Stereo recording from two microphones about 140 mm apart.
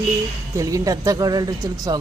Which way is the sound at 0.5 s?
25° right (ahead or behind).